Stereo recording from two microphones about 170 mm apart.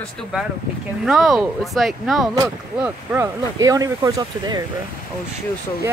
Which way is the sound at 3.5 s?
20° right (ahead or behind).